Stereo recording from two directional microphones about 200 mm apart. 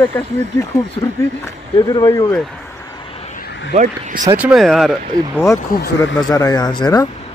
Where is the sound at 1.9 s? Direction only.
20° left (ahead or behind).